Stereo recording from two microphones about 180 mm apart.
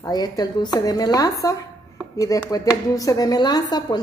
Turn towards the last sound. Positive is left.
turn(degrees=20)  # may be behind; listen again after turning